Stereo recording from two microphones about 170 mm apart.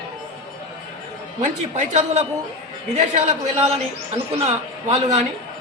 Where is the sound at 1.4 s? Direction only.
45° right (ahead or behind).